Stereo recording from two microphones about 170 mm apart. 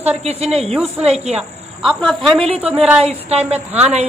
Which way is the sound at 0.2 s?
35° right (ahead or behind).